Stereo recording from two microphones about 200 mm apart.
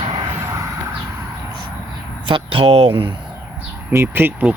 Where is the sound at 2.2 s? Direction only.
25° right (ahead or behind).